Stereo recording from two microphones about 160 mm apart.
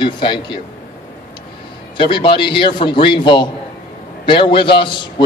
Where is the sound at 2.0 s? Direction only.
30° left (ahead or behind).